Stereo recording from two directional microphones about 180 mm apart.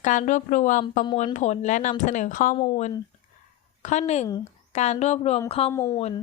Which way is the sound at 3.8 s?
40° left (ahead or behind).